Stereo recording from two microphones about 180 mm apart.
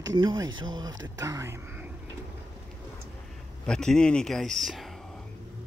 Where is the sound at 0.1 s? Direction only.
20° right (ahead or behind).